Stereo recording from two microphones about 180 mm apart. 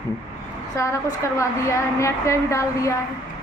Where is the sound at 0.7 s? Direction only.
15° left (ahead or behind).